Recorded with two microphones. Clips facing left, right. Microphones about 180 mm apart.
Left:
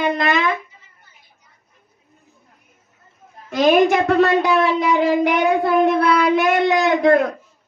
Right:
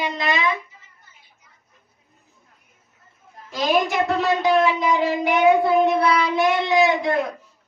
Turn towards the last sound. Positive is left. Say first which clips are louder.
# left 4 dB
turn(degrees=60)  # may be behind; listen again after turning